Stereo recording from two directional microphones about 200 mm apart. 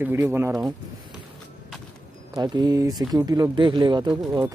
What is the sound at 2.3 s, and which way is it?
Speech, 20° right (ahead or behind).